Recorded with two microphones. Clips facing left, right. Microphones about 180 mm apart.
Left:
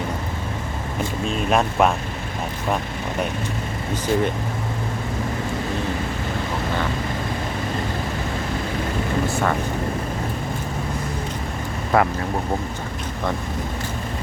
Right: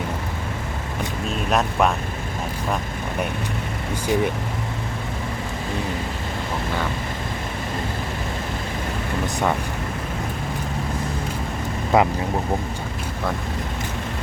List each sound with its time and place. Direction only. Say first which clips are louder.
1.5 s speech: left 2 dB; centre (ahead or behind)
4.1 s speech: even; 15° right (ahead or behind)
9.2 s speech: right 2 dB; 15° right (ahead or behind)
11.9 s speech: right 1 dB; 15° right (ahead or behind)